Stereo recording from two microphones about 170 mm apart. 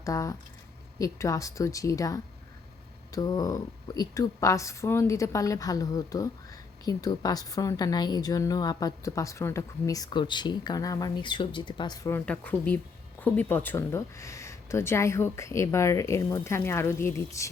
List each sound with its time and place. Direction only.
0.0 s speech: 20° left (ahead or behind)
12.1 s speech: 10° left (ahead or behind)